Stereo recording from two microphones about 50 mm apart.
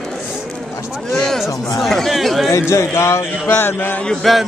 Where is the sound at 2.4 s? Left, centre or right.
Left.